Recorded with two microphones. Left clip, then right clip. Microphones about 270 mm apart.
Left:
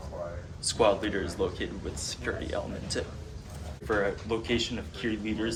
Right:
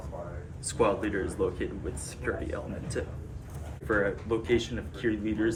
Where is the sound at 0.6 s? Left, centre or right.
Left.